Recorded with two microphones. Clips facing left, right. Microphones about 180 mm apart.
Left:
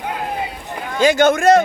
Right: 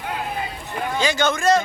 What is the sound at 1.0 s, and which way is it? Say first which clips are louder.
Speech: left 9 dB; 55° left (ahead or behind).